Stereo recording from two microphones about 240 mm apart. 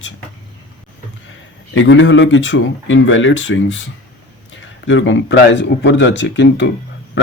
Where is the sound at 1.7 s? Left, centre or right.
Left.